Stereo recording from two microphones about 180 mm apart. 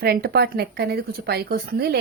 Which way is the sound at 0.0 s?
60° right (ahead or behind).